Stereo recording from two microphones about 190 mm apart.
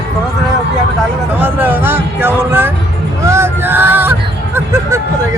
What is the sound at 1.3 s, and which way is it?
Speech, 10° right (ahead or behind).